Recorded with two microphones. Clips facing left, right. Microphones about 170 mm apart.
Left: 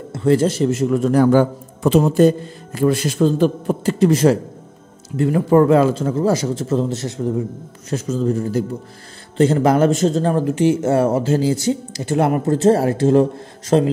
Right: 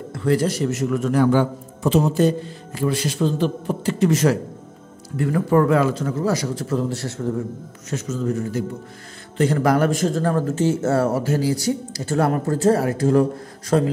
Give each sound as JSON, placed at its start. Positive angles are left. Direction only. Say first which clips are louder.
{"t": 0.1, "sound": "speech", "louder": "left 4 dB", "side_deg": 25}
{"t": 1.8, "sound": "a man's voice", "louder": "left 4 dB", "side_deg": 60}
{"t": 7.9, "sound": "speech", "louder": "left 4 dB", "side_deg": 30}